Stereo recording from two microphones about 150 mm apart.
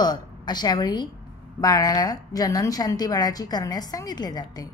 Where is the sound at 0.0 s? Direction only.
30° left (ahead or behind).